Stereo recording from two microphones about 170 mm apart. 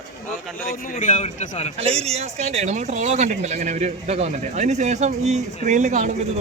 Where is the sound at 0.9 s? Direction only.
45° left (ahead or behind).